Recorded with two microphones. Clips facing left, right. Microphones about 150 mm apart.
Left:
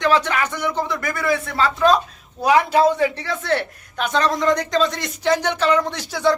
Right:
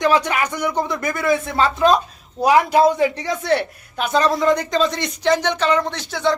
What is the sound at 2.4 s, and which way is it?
Speech, 10° right (ahead or behind).